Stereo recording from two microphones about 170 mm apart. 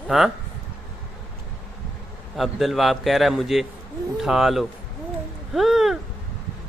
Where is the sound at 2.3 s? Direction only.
Centre (ahead or behind).